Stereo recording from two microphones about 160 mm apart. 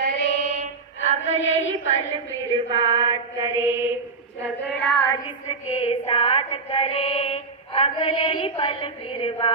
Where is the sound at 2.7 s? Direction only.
25° right (ahead or behind).